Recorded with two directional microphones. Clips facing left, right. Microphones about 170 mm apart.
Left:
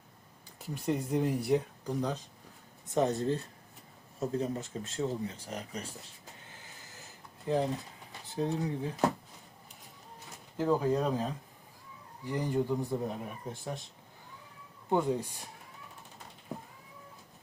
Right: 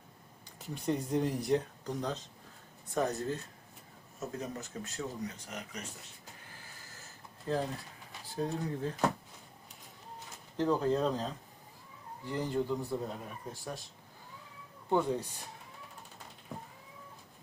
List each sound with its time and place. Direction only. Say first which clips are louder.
0.7 s speech: left 1 dB; 5° left (ahead or behind)
2.8 s speech: left 4 dB; 25° left (ahead or behind)
6.5 s a sound: left 1 dB; 15° left (ahead or behind)
8.4 s speech: left 2 dB; 15° left (ahead or behind)
10.6 s speech: left 1 dB; 10° left (ahead or behind)
14.8 s speech: left 1 dB; 15° left (ahead or behind)